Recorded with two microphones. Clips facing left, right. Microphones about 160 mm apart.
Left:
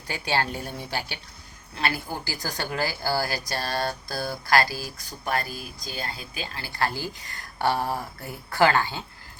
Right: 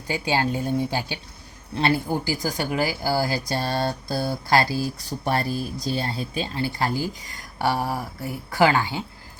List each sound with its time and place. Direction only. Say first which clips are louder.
0.1 s speech: right 4 dB; 15° right (ahead or behind)